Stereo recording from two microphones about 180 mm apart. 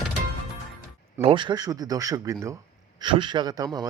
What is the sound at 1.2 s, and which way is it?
Speech, 30° right (ahead or behind).